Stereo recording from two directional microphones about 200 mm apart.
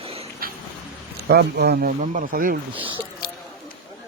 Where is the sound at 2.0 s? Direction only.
40° right (ahead or behind).